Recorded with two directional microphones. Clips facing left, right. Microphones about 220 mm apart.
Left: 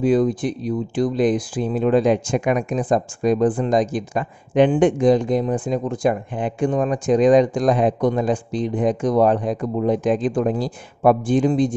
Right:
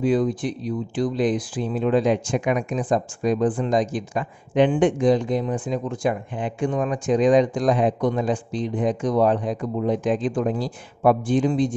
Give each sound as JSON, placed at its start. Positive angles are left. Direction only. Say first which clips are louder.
{"t": 0.0, "sound": "speech", "louder": "left 3 dB", "side_deg": 45}